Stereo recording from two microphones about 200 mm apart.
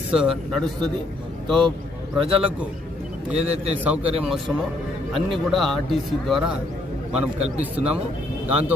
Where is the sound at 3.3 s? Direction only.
30° right (ahead or behind).